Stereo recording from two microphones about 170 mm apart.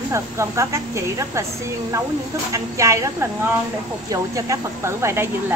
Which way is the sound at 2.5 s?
20° right (ahead or behind).